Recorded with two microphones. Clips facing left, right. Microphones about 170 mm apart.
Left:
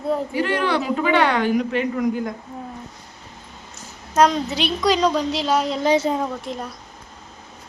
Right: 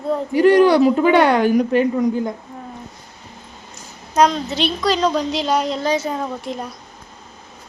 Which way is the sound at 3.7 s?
5° left (ahead or behind).